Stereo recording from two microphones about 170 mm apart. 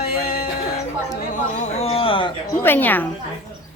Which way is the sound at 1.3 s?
45° left (ahead or behind).